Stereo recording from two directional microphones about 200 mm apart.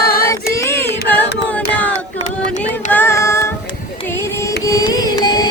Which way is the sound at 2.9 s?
10° left (ahead or behind).